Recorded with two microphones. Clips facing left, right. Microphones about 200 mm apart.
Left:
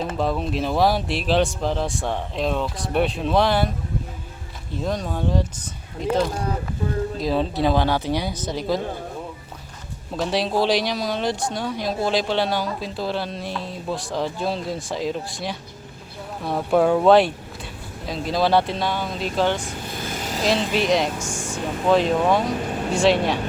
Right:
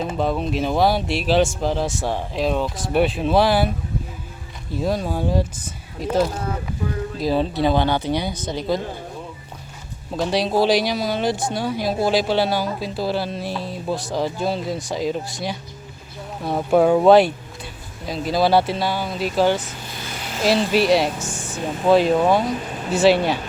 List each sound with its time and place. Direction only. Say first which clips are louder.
0.2 s speech: right 2 dB; centre (ahead or behind)
4.8 s speech: right 3 dB; 5° right (ahead or behind)
10.1 s speech: right 2 dB; centre (ahead or behind)
19.9 s vehicle: left 3 dB; 50° left (ahead or behind)
20.4 s speech: right 4 dB; 5° right (ahead or behind)